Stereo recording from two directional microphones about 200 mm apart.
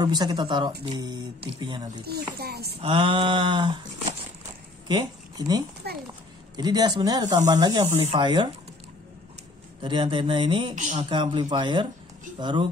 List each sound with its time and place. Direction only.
0.0 s speech: 20° right (ahead or behind)
2.0 s speech: 55° right (ahead or behind)
2.8 s speech: 25° right (ahead or behind)
4.8 s speech: 20° right (ahead or behind)
5.8 s speech: 55° right (ahead or behind)
6.5 s speech: 20° right (ahead or behind)
9.8 s speech: 25° right (ahead or behind)
10.7 s speech: 35° right (ahead or behind)
11.1 s speech: 25° right (ahead or behind)